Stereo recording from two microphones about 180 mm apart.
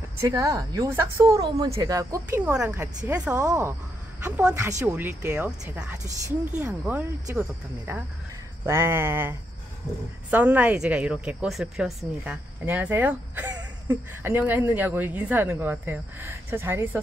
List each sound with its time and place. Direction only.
0.2 s speech: 20° right (ahead or behind)
4.2 s a woman's voice: 5° right (ahead or behind)
10.3 s speech: 10° right (ahead or behind)